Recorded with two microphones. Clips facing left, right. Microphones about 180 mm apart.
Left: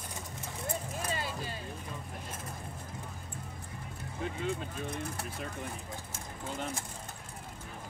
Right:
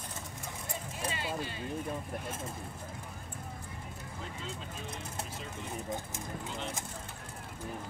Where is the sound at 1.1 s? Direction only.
40° left (ahead or behind).